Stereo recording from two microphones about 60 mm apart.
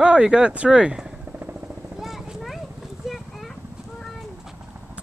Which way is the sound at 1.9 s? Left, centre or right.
Centre.